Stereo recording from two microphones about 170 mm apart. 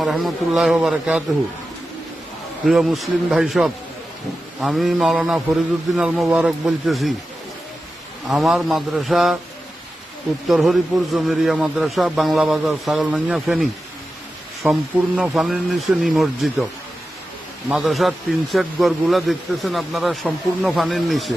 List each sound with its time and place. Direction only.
0.0 s speech: centre (ahead or behind)
2.6 s speech: centre (ahead or behind)
8.3 s speech: centre (ahead or behind)
10.5 s speech: centre (ahead or behind)
17.7 s speech: centre (ahead or behind)